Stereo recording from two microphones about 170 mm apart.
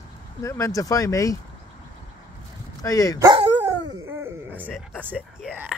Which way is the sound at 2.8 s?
20° left (ahead or behind).